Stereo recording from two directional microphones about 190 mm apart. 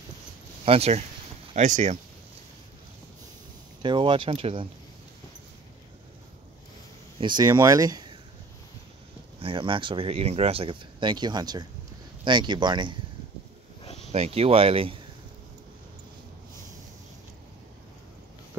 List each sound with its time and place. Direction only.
0.7 s speech: 35° right (ahead or behind)
3.8 s speech: 25° right (ahead or behind)
7.2 s speech: 25° right (ahead or behind)
9.4 s speech: 25° right (ahead or behind)
14.1 s speech: 35° right (ahead or behind)